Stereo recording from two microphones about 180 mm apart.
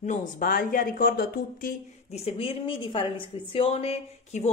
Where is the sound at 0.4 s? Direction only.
50° left (ahead or behind).